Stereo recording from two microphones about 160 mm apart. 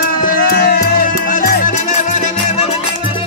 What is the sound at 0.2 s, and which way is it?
Music, 70° left (ahead or behind).